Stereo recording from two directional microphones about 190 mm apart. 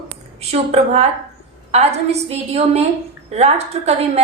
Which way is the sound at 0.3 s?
30° right (ahead or behind).